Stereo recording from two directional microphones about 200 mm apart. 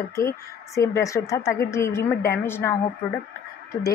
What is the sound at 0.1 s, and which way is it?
A woman's voice, 15° left (ahead or behind).